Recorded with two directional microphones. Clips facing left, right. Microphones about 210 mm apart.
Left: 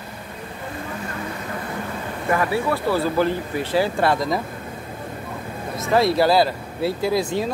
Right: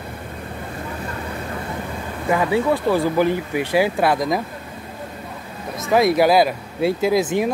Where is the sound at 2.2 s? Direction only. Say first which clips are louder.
Right 3 dB; 20° right (ahead or behind).